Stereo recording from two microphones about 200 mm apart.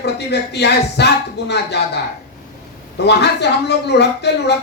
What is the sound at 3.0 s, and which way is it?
Speech, 55° left (ahead or behind).